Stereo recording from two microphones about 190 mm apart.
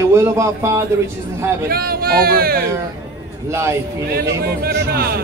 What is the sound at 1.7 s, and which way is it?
Speech, 50° right (ahead or behind).